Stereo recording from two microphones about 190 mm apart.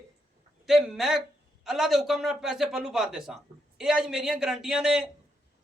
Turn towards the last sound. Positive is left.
turn(degrees=-5)  # may be behind; listen again after turning